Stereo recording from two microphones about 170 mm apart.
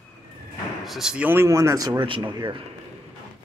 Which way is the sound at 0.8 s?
Centre (ahead or behind).